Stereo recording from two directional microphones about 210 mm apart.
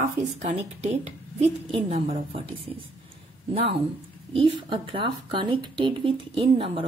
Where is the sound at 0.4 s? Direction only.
30° right (ahead or behind).